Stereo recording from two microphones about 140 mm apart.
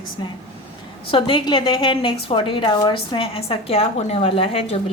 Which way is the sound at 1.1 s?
40° left (ahead or behind).